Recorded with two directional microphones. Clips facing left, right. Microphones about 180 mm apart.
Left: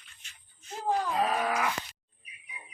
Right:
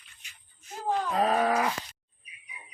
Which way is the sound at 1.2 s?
35° right (ahead or behind).